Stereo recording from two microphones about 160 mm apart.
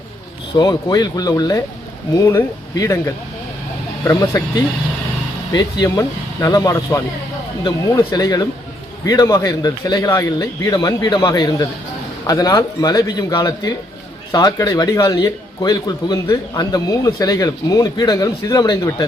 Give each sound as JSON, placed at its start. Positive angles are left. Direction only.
{"t": 0.5, "sound": "a man's voice", "side_deg": 25}
{"t": 4.0, "sound": "a man's voice", "side_deg": 20}
{"t": 5.5, "sound": "a man's voice", "side_deg": 20}